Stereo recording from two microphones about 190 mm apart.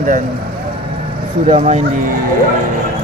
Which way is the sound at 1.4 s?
35° right (ahead or behind).